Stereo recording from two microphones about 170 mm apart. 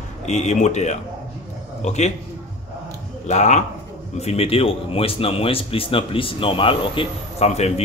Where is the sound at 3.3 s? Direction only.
40° left (ahead or behind).